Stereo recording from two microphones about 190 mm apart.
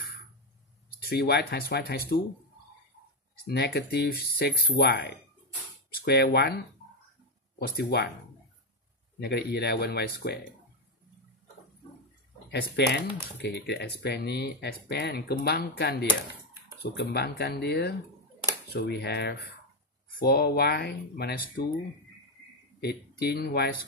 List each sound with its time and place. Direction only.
0.9 s speech: 55° left (ahead or behind)
3.4 s speech: 55° left (ahead or behind)
9.2 s speech: 55° left (ahead or behind)
12.4 s speech: 60° left (ahead or behind)
22.8 s speech: 60° left (ahead or behind)